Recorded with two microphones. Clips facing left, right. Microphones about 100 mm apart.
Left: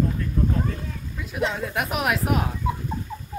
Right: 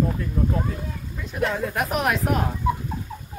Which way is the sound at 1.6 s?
Centre (ahead or behind).